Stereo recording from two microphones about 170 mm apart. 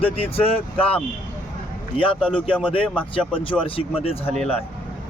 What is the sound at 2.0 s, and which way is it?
Speech, 30° left (ahead or behind).